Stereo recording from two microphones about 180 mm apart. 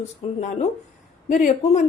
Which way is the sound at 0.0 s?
40° left (ahead or behind).